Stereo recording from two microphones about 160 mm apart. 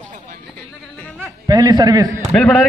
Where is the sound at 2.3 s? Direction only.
10° left (ahead or behind).